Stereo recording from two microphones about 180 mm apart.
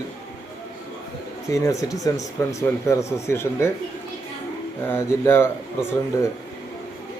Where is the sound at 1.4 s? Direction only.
15° left (ahead or behind).